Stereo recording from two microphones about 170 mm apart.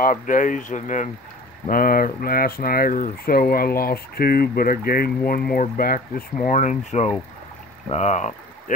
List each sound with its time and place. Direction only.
0.0 s speech: 50° left (ahead or behind)
1.7 s speech: 55° left (ahead or behind)